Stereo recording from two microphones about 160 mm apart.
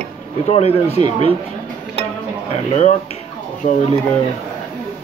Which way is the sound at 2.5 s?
45° left (ahead or behind).